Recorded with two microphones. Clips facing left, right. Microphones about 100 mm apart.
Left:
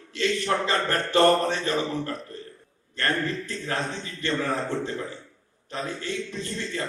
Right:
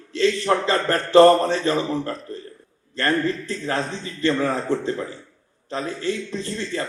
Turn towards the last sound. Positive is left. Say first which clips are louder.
# right 4 dB
turn(degrees=-30)  # may be behind; listen again after turning